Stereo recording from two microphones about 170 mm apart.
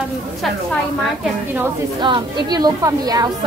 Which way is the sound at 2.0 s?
30° right (ahead or behind).